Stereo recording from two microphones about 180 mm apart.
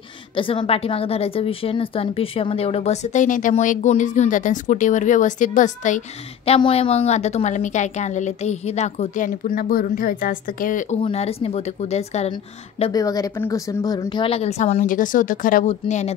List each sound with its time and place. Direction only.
0.4 s a woman's voice: 30° left (ahead or behind); by 11.0 s 45° left (ahead or behind)
11.0 s a woman's voice: 35° left (ahead or behind)
12.9 s a woman's voice: 20° left (ahead or behind); by 16.1 s 40° left (ahead or behind)